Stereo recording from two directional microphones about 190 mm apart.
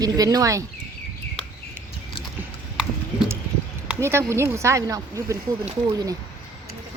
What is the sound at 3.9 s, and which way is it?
A woman's voice, 15° right (ahead or behind).